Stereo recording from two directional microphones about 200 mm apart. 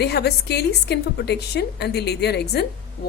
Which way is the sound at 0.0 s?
55° left (ahead or behind).